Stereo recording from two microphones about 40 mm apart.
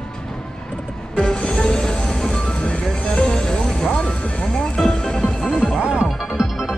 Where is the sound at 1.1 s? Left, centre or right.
Centre.